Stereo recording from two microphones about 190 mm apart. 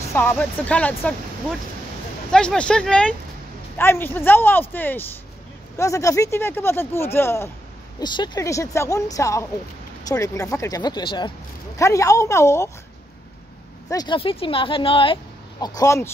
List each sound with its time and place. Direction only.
0.0 s speech: 15° left (ahead or behind)
2.3 s speech: 5° left (ahead or behind)
13.8 s speech: 20° left (ahead or behind)